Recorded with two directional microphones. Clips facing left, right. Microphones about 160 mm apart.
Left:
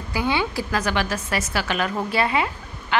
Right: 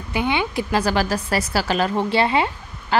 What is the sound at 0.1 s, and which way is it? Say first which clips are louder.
A woman's voice: right 2 dB; 20° right (ahead or behind).